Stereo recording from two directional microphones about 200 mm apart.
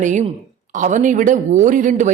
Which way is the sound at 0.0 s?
35° right (ahead or behind).